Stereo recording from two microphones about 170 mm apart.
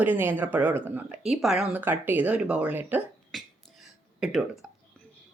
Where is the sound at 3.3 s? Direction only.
Centre (ahead or behind).